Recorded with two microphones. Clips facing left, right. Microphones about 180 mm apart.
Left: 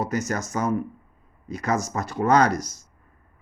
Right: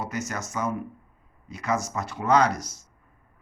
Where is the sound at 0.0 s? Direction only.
40° left (ahead or behind).